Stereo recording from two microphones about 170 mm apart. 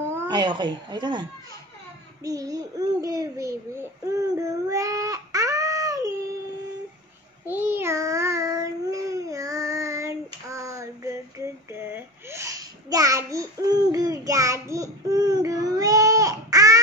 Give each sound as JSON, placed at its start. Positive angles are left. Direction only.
{"t": 0.3, "sound": "speech", "side_deg": -25}
{"t": 2.2, "sound": "a child's voice", "side_deg": -20}
{"t": 7.4, "sound": "a sound", "side_deg": -10}